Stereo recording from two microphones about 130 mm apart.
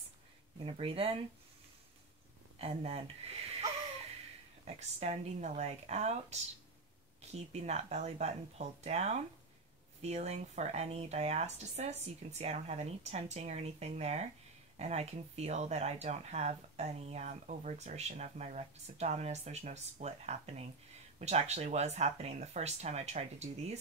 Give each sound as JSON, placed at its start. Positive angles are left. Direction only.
{"t": 0.7, "sound": "speech", "side_deg": -45}
{"t": 2.6, "sound": "speech", "side_deg": -50}
{"t": 4.6, "sound": "speech", "side_deg": -60}